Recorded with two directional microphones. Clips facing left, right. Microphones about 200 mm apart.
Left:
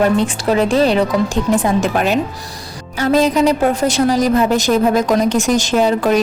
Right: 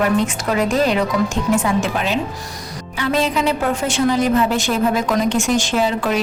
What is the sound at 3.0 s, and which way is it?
A woman's voice, 40° left (ahead or behind).